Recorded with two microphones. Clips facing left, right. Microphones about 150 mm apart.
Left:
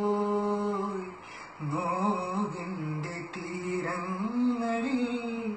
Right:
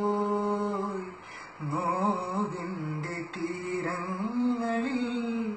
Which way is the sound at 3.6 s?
Centre (ahead or behind).